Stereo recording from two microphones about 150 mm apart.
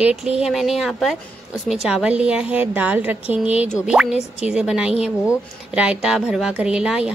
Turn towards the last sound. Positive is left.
turn(degrees=-5)  # may be behind; listen again after turning